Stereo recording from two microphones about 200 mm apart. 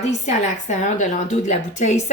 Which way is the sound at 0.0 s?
35° left (ahead or behind).